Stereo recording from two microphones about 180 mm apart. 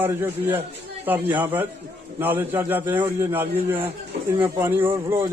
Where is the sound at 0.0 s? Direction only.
10° right (ahead or behind).